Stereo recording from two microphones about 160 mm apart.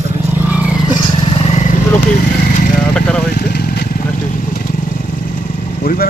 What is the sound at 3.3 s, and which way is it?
Vehicle, 80° left.